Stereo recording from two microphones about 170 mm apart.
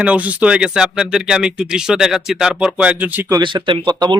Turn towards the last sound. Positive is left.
turn(degrees=-25)  # may be behind; listen again after turning